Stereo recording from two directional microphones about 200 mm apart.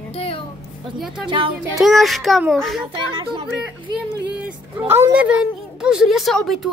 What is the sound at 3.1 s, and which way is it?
Speech, 25° right (ahead or behind).